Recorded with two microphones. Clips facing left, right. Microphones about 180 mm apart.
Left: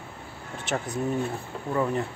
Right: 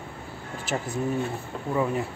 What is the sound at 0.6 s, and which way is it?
Speech, centre (ahead or behind).